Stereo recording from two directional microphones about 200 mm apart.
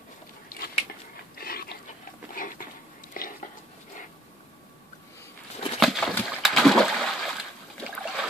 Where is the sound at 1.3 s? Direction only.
50° left (ahead or behind).